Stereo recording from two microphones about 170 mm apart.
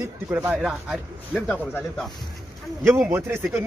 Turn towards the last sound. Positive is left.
turn(degrees=-15)  # may be behind; listen again after turning